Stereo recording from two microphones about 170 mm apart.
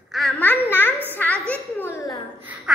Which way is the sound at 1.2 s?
10° left (ahead or behind).